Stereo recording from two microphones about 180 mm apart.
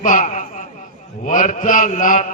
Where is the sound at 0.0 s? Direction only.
45° left (ahead or behind).